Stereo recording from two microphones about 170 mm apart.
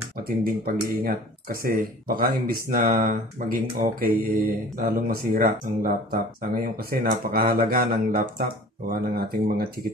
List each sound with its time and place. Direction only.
0.2 s speech: 60° right (ahead or behind)